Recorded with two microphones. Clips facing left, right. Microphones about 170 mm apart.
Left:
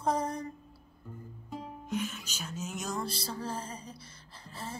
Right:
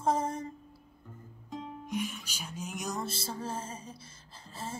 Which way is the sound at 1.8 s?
10° right (ahead or behind).